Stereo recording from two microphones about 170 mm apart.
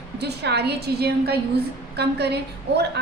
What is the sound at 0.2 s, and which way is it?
A woman's voice, 80° right.